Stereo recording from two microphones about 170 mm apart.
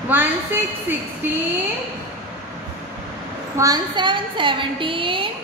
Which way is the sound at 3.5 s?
20° right (ahead or behind).